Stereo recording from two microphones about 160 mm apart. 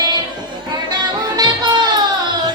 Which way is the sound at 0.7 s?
25° right (ahead or behind).